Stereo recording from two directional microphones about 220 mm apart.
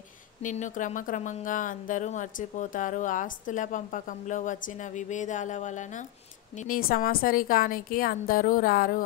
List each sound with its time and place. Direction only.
0.4 s speech: 35° left (ahead or behind)